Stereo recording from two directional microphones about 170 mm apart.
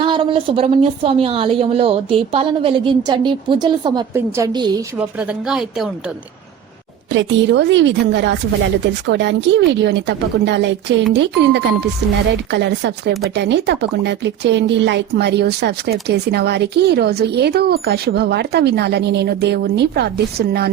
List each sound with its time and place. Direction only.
0.0 s a woman's voice: 30° right (ahead or behind)
4.9 s speech: 10° right (ahead or behind)
7.1 s speech: 90° right; by 20.7 s 70° right (ahead or behind)